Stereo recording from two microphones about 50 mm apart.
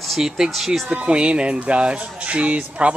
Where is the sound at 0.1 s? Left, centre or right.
Centre.